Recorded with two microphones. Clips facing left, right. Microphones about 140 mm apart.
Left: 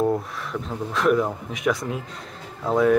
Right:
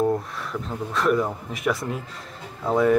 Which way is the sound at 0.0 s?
Centre (ahead or behind).